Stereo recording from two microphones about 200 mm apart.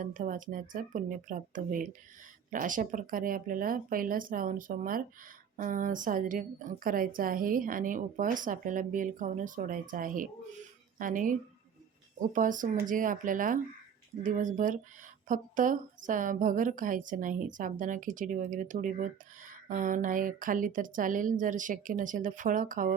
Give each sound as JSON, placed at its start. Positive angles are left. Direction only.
{"t": 0.0, "sound": "a woman's voice", "side_deg": -40}